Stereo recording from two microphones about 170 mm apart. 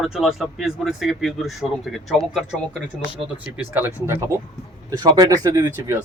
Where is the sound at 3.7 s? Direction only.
15° right (ahead or behind).